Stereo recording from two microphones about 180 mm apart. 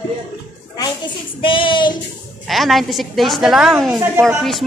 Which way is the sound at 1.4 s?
30° left (ahead or behind).